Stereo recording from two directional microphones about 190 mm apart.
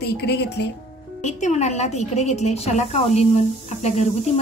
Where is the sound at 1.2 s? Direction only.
35° left (ahead or behind).